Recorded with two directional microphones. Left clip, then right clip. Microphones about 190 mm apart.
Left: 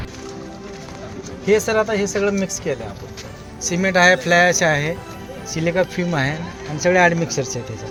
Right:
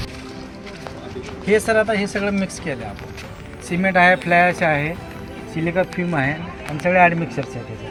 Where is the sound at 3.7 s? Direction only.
70° left (ahead or behind).